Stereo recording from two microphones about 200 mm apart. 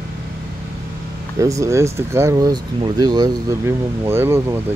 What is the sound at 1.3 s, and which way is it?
Speech, 15° right (ahead or behind).